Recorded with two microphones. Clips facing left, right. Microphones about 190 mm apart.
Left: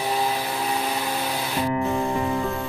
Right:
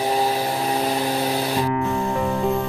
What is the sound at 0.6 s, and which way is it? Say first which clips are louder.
Vehicle: right 4 dB; 40° right (ahead or behind).